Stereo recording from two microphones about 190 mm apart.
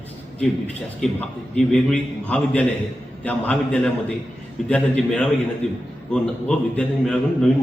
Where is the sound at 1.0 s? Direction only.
5° left (ahead or behind).